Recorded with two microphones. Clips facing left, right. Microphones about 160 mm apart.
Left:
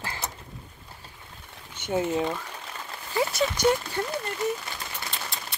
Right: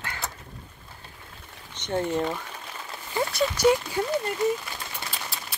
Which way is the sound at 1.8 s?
5° left (ahead or behind).